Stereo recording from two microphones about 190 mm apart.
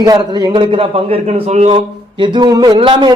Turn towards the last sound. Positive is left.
turn(degrees=-25)  # may be behind; listen again after turning